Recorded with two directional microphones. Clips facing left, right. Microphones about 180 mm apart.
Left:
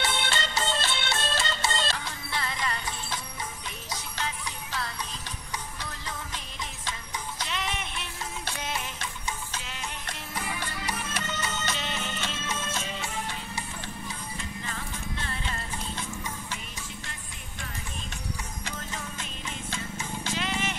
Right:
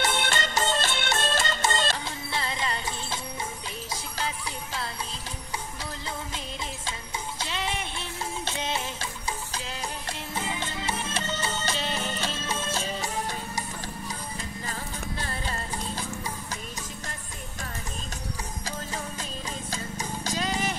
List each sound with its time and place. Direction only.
0.0 s music: 45° right (ahead or behind)
2.0 s music: 30° right (ahead or behind)
6.9 s music: 30° right (ahead or behind)
19.7 s music: 40° right (ahead or behind)